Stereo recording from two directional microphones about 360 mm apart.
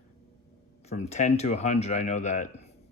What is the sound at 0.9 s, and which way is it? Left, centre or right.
Speech, centre.